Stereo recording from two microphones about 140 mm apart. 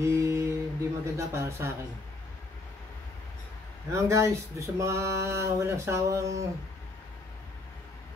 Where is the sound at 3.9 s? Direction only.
20° right (ahead or behind).